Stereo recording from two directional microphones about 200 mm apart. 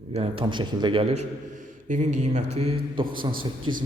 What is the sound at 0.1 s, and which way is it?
A man's voice, 30° right (ahead or behind).